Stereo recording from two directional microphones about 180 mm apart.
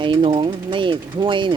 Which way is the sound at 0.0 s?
30° right (ahead or behind).